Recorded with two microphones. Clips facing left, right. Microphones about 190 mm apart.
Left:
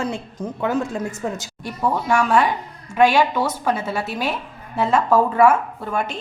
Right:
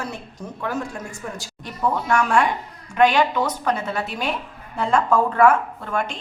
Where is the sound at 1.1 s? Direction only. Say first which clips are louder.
Left 6 dB; 20° left (ahead or behind).